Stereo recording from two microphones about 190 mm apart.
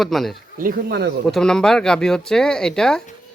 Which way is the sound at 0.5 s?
50° right (ahead or behind).